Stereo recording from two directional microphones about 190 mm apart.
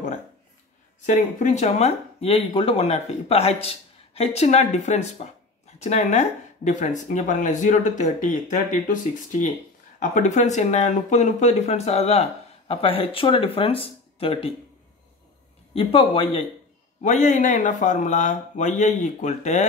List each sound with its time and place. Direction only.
1.0 s speech: 40° left (ahead or behind)
15.7 s speech: 30° left (ahead or behind)